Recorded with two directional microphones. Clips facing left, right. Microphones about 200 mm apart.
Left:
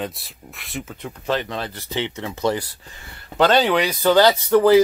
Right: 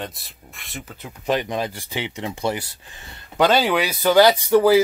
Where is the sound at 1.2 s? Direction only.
15° right (ahead or behind).